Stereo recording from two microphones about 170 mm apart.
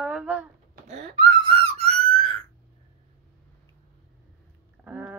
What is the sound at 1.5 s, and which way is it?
Whistle, 35° right (ahead or behind).